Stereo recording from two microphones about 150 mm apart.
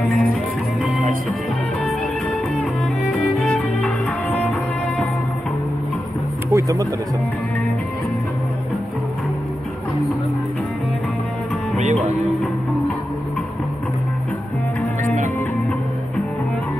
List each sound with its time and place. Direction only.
3.3 s violin: 5° left (ahead or behind)
4.4 s music: centre (ahead or behind)
6.5 s music: 25° right (ahead or behind)
11.8 s music: 55° right (ahead or behind)